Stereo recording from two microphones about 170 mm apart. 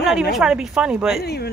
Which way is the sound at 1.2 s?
70° left (ahead or behind).